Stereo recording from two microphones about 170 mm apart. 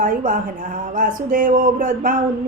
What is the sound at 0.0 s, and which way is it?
Speech, 50° right (ahead or behind).